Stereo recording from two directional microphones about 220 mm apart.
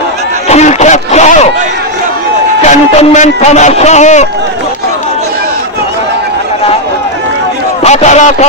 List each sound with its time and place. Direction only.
0.5 s a sound: 30° left (ahead or behind)
2.6 s speech: 30° left (ahead or behind)
7.8 s a man's voice: 30° left (ahead or behind)